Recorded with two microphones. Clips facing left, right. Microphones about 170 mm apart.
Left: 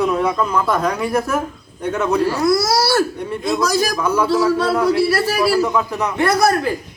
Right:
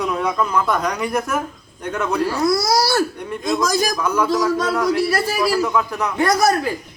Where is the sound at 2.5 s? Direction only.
15° right (ahead or behind).